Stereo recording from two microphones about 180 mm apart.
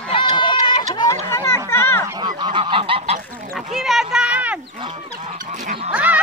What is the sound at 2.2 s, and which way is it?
Goose, 25° right (ahead or behind).